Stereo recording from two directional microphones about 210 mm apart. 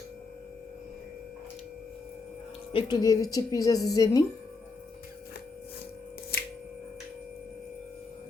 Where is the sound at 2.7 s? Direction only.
20° left (ahead or behind).